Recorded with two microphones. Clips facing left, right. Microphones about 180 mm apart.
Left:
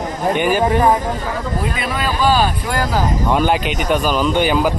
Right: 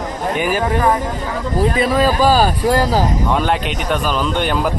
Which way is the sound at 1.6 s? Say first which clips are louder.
Right 12 dB; 35° right (ahead or behind).